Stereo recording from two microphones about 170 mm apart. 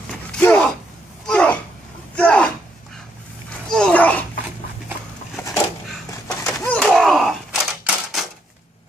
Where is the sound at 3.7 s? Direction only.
5° left (ahead or behind).